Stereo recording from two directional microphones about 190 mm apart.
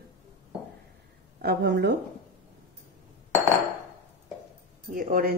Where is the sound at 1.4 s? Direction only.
55° right (ahead or behind).